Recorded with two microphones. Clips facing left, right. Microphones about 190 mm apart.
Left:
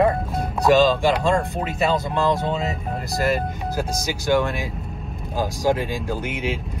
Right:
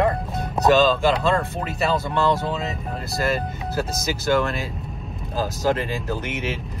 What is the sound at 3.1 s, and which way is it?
Speech, 15° left (ahead or behind).